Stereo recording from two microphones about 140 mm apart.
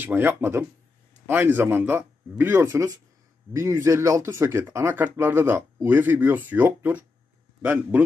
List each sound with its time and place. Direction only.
0.0 s speech: 15° right (ahead or behind)